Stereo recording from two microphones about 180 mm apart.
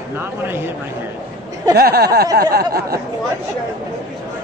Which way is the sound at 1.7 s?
60° right (ahead or behind).